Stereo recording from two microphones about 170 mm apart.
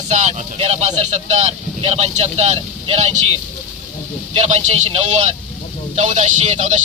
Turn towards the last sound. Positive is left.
turn(degrees=-45)  # may be behind; listen again after turning